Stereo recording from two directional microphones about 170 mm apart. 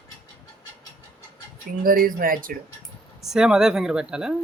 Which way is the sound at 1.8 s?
55° right (ahead or behind).